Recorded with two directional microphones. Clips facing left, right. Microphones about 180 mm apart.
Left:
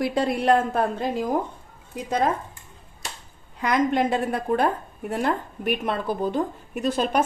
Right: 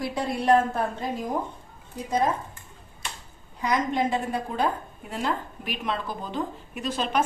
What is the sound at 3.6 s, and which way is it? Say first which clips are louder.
A woman's voice: left 3 dB; 60° left (ahead or behind).